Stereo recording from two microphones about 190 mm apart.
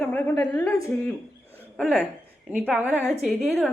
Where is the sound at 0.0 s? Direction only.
10° left (ahead or behind).